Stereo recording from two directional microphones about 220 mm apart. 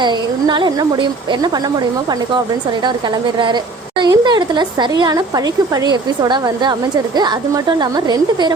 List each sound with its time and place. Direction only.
0.0 s a woman's voice: 20° right (ahead or behind)
3.3 s a woman's voice: 20° right (ahead or behind)